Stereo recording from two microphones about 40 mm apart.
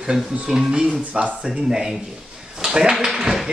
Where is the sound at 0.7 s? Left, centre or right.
Right.